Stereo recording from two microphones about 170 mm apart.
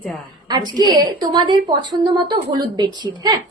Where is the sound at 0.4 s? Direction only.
25° right (ahead or behind).